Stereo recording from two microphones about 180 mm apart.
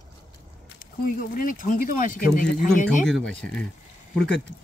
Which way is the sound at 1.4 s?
45° left (ahead or behind).